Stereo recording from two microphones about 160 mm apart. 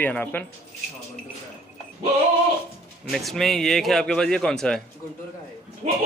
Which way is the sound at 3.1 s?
Centre (ahead or behind).